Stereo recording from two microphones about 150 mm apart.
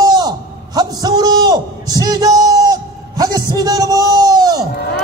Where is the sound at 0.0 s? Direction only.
25° right (ahead or behind).